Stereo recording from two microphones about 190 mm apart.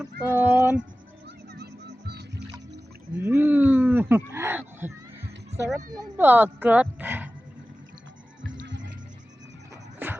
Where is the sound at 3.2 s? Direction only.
10° right (ahead or behind).